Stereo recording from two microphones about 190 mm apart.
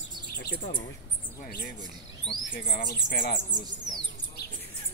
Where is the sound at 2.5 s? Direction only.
40° left (ahead or behind).